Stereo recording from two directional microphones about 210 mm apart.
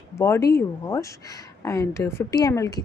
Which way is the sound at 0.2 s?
15° left (ahead or behind).